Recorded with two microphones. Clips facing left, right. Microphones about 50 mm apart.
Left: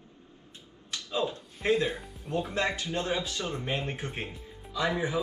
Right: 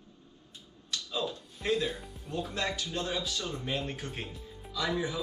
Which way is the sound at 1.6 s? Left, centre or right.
Left.